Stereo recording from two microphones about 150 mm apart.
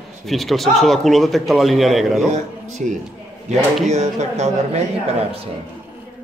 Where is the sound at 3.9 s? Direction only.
50° right (ahead or behind).